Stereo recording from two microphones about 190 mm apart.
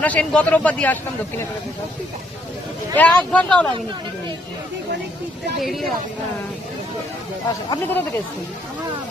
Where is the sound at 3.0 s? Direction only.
5° left (ahead or behind).